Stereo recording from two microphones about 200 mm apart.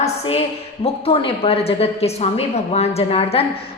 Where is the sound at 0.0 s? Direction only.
30° left (ahead or behind).